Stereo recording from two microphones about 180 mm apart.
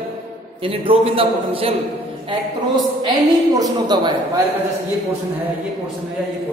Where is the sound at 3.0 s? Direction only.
20° right (ahead or behind).